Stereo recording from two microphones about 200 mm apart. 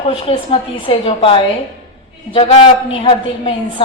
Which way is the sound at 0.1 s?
30° left (ahead or behind).